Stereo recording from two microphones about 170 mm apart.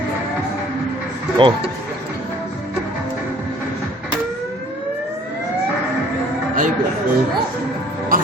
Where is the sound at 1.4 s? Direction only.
30° right (ahead or behind).